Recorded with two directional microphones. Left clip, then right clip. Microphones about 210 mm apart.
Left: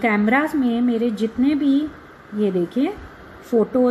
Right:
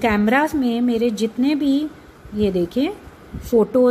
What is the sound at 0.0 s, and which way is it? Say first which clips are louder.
A woman's voice: right 1 dB; 15° right (ahead or behind).